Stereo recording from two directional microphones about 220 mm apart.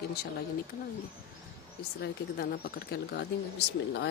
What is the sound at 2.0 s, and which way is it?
Speech, 45° left (ahead or behind).